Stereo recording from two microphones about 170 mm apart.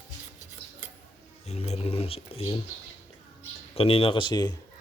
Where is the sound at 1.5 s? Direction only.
40° left (ahead or behind).